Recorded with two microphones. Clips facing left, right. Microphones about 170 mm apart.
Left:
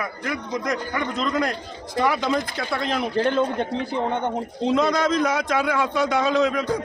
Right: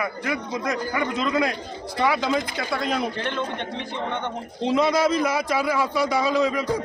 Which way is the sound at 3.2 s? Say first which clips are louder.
Left 7 dB; 40° left (ahead or behind).